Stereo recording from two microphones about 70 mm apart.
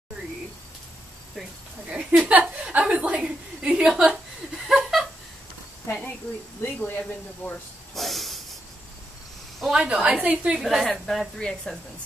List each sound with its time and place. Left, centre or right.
1.9 s chuckle: centre
4.6 s laughter: centre
6.6 s speech: left
7.9 s hiss: centre
9.7 s a woman's voice: centre
10.6 s a woman's voice: centre